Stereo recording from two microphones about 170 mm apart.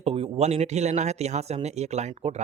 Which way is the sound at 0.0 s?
35° right (ahead or behind).